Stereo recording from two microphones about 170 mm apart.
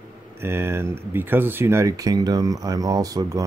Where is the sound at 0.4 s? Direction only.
15° right (ahead or behind).